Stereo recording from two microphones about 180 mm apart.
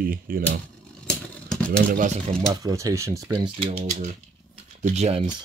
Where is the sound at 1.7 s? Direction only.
50° right (ahead or behind).